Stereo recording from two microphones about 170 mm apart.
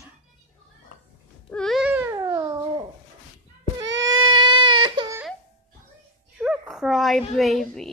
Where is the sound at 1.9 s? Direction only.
15° right (ahead or behind).